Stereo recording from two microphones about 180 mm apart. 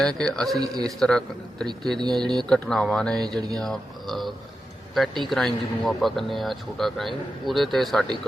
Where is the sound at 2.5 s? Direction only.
5° left (ahead or behind).